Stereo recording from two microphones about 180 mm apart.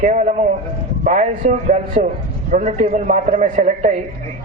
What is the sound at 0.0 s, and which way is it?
A man's voice, 45° right (ahead or behind).